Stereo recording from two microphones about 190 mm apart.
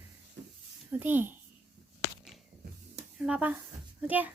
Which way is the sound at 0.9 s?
10° right (ahead or behind).